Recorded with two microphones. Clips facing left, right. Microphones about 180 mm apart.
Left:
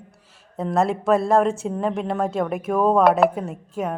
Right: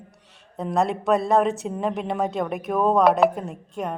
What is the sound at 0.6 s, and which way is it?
A woman's voice, centre (ahead or behind).